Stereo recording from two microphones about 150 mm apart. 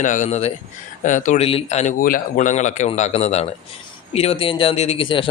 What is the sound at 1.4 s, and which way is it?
A man's voice, 45° left (ahead or behind).